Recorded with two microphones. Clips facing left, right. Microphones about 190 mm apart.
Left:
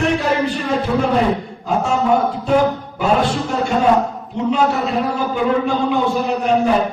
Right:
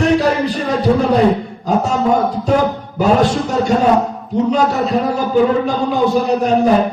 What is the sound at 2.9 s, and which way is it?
A man's voice, 40° right (ahead or behind).